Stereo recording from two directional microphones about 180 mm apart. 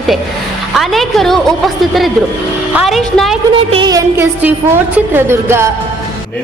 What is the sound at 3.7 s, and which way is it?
Music, 25° right (ahead or behind).